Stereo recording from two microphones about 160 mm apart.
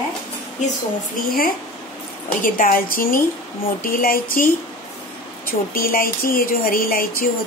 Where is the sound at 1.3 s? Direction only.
65° left (ahead or behind).